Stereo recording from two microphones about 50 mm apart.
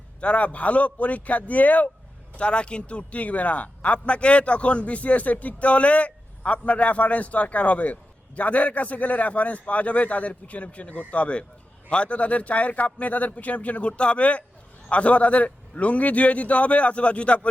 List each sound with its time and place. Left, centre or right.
0.2 s speech: left
2.3 s speech: left